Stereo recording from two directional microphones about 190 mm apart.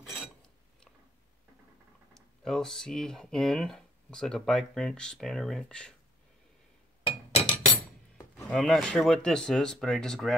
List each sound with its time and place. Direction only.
0.0 s a sound: 5° right (ahead or behind)
2.1 s speech: centre (ahead or behind)
7.0 s chink: 30° left (ahead or behind)
8.5 s speech: 5° left (ahead or behind)